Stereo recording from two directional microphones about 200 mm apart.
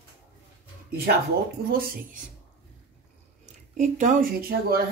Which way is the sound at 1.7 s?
45° right (ahead or behind).